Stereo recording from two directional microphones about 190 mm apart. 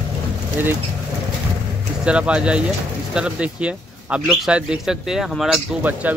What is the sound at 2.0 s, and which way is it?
Speech, 5° right (ahead or behind).